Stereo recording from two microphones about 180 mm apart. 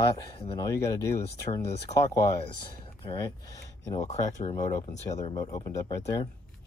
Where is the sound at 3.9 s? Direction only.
40° left (ahead or behind).